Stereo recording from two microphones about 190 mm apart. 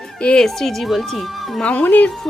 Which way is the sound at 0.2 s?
5° left (ahead or behind).